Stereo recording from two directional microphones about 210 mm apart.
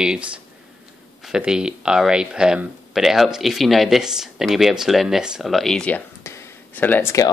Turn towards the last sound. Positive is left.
turn(degrees=15)  # may be behind; listen again after turning